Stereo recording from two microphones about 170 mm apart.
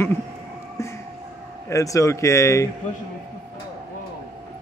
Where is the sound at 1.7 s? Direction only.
20° left (ahead or behind).